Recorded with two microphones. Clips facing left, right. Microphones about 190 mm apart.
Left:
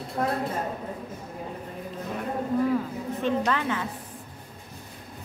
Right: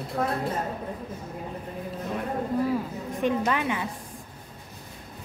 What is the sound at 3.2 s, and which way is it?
Speech, 15° right (ahead or behind).